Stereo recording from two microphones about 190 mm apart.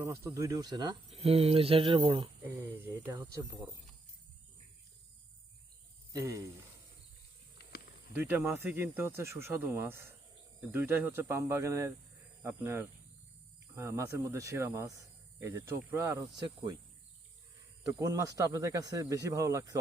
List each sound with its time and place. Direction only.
0.0 s speech: 15° right (ahead or behind)
2.4 s speech: 15° right (ahead or behind)
6.1 s speech: 15° right (ahead or behind)
7.6 s snake: 55° left (ahead or behind)
8.1 s speech: 10° right (ahead or behind)
17.8 s speech: 20° right (ahead or behind)